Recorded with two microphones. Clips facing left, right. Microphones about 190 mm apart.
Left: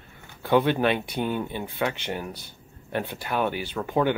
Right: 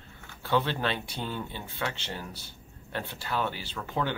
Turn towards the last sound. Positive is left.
turn(degrees=15)  # may be behind; listen again after turning